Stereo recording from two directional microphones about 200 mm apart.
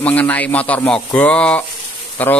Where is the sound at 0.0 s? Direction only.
5° left (ahead or behind).